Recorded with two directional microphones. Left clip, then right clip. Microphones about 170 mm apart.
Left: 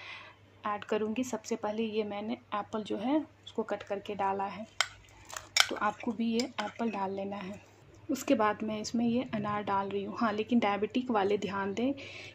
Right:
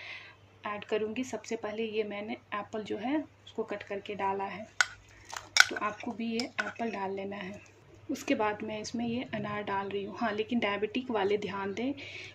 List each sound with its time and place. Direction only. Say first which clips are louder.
0.0 s speech: right 1 dB; 35° left (ahead or behind)
5.3 s a sound: right 4 dB; centre (ahead or behind)
5.7 s speech: left 2 dB; 35° left (ahead or behind)